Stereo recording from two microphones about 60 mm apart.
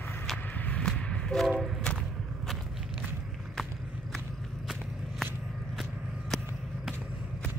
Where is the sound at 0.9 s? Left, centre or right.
Centre.